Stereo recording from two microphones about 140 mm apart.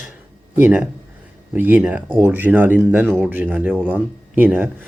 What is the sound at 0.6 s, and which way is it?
Speech, 10° right (ahead or behind).